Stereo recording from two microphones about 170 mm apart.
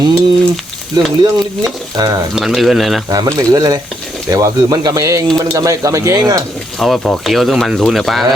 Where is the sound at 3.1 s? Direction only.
20° right (ahead or behind).